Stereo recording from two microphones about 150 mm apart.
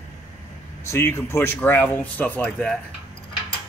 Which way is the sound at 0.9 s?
15° left (ahead or behind).